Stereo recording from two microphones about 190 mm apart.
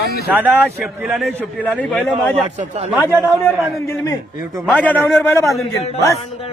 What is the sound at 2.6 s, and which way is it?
Speech, 35° right (ahead or behind).